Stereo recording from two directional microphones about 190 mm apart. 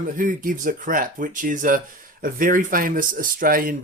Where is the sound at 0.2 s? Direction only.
45° right (ahead or behind).